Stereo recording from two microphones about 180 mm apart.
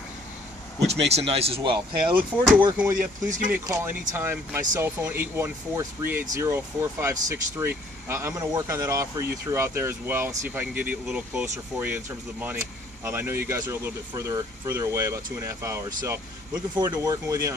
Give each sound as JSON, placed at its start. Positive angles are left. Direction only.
{"t": 1.1, "sound": "speech", "side_deg": -35}
{"t": 2.0, "sound": "speech", "side_deg": -5}
{"t": 3.3, "sound": "speech", "side_deg": -45}
{"t": 3.5, "sound": "speech", "side_deg": -15}